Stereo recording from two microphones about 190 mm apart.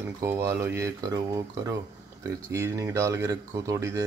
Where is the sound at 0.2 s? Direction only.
15° right (ahead or behind).